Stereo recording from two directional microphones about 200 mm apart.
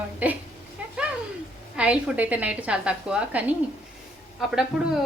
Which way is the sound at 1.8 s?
5° right (ahead or behind).